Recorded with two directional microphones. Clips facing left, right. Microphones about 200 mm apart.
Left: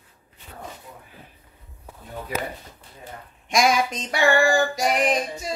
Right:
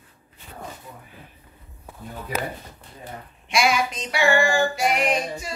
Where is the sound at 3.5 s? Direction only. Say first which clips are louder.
Left 2 dB; 40° left (ahead or behind).